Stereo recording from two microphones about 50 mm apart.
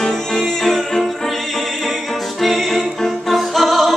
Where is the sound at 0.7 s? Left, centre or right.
Centre.